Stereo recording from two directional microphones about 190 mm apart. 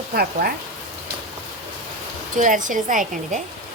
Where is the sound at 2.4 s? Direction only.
45° right (ahead or behind).